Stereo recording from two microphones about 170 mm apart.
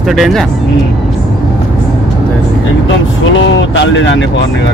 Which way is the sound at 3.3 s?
90° left.